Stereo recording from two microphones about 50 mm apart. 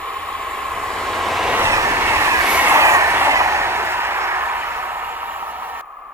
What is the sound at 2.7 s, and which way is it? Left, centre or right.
Train, right.